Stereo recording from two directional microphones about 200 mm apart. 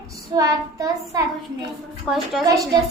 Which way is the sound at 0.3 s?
15° right (ahead or behind).